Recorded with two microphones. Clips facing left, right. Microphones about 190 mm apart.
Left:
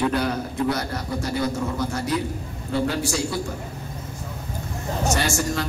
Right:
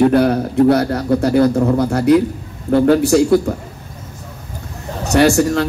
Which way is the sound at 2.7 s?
55° right (ahead or behind).